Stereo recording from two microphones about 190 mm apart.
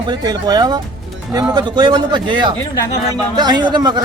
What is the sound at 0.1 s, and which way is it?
Speech, 20° right (ahead or behind).